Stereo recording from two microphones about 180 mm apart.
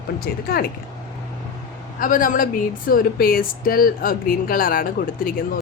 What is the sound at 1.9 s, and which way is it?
Speech, 50° left (ahead or behind).